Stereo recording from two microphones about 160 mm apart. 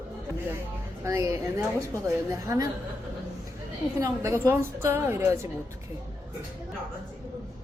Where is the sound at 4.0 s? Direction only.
20° right (ahead or behind).